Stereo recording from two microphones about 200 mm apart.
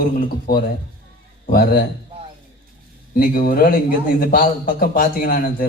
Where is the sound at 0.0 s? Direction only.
45° left (ahead or behind).